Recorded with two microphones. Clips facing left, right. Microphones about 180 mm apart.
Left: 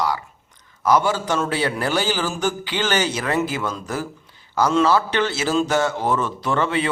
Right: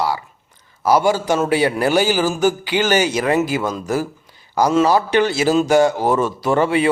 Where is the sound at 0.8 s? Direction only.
10° right (ahead or behind).